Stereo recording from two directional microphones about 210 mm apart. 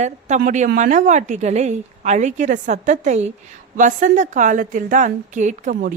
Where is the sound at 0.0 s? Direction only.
35° right (ahead or behind).